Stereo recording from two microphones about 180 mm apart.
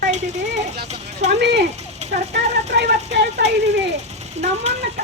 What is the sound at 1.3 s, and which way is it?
Speech, 75° right (ahead or behind).